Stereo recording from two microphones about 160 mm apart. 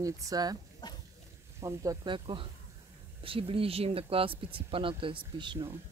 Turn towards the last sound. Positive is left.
turn(degrees=-30)  # may be behind; listen again after turning